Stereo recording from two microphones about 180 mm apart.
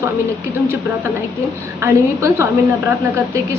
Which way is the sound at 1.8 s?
15° right (ahead or behind).